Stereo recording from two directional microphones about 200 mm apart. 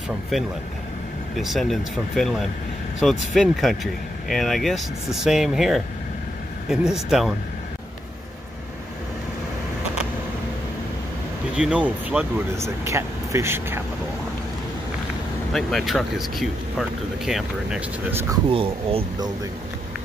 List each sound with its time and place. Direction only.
0.3 s speech: centre (ahead or behind)
11.5 s speech: 5° right (ahead or behind)
15.5 s speech: centre (ahead or behind)
18.3 s speech: 25° right (ahead or behind)